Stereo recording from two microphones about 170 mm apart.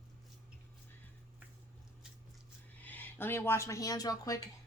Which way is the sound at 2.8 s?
10° left (ahead or behind).